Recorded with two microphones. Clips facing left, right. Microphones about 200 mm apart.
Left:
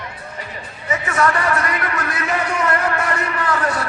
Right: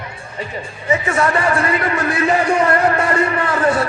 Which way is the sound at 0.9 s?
25° right (ahead or behind).